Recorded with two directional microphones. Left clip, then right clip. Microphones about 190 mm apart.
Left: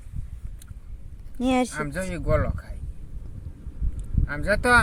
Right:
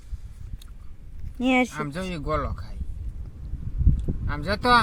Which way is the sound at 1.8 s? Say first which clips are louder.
Left 1 dB; 50° right (ahead or behind).